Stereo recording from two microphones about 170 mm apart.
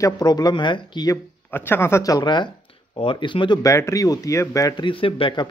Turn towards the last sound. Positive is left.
turn(degrees=30)  # may be behind; listen again after turning